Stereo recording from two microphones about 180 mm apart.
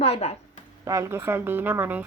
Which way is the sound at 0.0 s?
35° left (ahead or behind).